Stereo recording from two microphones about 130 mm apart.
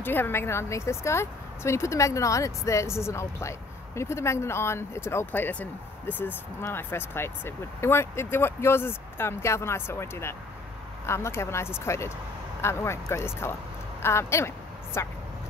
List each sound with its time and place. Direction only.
0.0 s speech: 15° left (ahead or behind)